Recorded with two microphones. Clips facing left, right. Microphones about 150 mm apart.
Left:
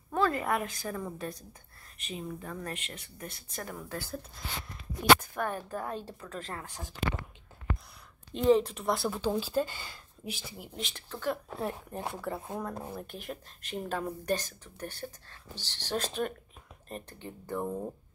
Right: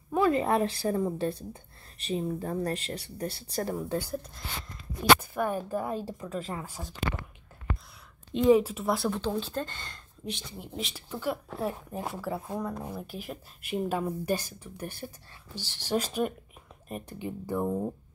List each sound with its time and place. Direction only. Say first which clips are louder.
0.1 s a woman's voice: right 4 dB; 20° right (ahead or behind)
5.2 s speech: right 4 dB; 10° right (ahead or behind)
8.4 s speech: right 3 dB; 5° right (ahead or behind)
17.6 s speech: right 5 dB; 25° right (ahead or behind)